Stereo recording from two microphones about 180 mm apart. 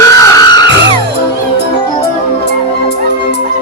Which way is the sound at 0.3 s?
20° left (ahead or behind).